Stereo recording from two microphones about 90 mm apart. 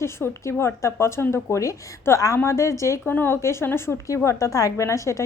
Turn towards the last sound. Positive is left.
turn(degrees=35)  # may be behind; listen again after turning